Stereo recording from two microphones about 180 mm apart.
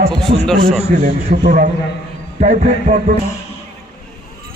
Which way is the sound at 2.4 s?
40° right (ahead or behind).